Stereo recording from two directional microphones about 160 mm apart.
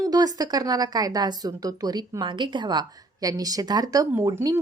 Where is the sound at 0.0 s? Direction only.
25° right (ahead or behind).